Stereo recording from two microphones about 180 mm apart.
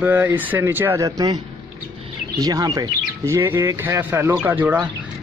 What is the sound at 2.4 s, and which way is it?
Speech, 20° right (ahead or behind).